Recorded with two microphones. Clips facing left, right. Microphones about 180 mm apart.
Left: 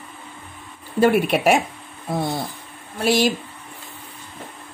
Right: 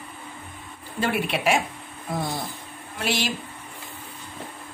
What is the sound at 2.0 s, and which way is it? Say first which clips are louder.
Speech: left 5 dB; 25° left (ahead or behind).